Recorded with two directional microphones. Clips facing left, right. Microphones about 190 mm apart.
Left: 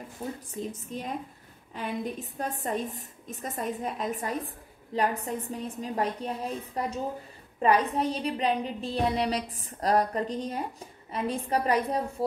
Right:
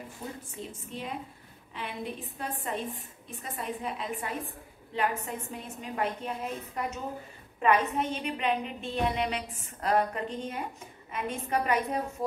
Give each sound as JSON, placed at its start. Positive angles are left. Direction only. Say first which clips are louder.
{"t": 0.2, "sound": "a woman's voice", "louder": "left 5 dB", "side_deg": 25}
{"t": 0.6, "sound": "a woman's voice", "louder": "left 5 dB", "side_deg": 40}